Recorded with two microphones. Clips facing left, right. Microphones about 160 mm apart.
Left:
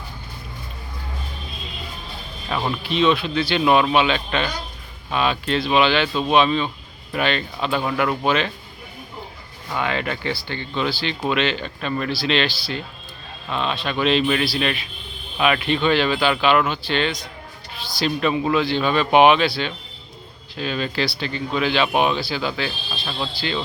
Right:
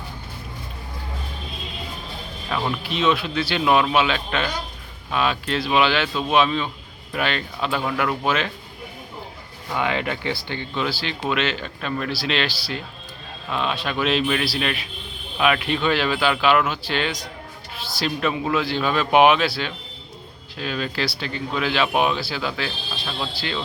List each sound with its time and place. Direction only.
2.5 s speech: 10° left (ahead or behind)
2.9 s speech: 5° right (ahead or behind)
9.7 s speech: 15° right (ahead or behind)
10.8 s speech: 5° right (ahead or behind)